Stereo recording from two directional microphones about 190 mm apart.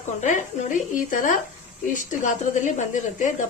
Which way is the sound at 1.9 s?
40° left (ahead or behind).